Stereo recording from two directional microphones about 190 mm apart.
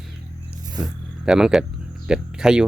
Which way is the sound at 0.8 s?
5° right (ahead or behind).